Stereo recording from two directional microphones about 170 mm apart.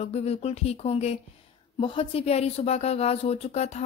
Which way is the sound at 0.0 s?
35° left (ahead or behind).